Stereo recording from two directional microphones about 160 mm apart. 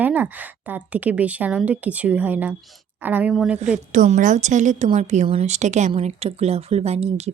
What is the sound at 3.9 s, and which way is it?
Speech, 55° right (ahead or behind).